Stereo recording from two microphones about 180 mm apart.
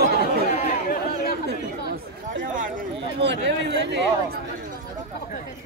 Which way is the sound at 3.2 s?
75° right (ahead or behind).